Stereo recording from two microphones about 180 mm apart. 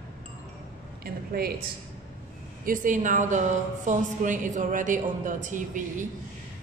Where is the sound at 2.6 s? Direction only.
45° right (ahead or behind).